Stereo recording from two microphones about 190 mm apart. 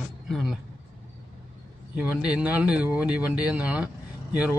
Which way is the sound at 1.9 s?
5° right (ahead or behind).